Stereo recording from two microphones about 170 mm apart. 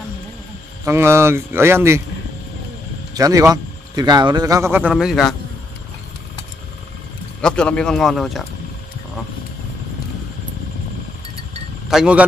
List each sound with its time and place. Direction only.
0.8 s a man's voice: 15° right (ahead or behind)
3.2 s speech: 20° right (ahead or behind)
4.9 s speech: centre (ahead or behind)
7.4 s speech: 5° left (ahead or behind)
11.9 s speech: 5° right (ahead or behind)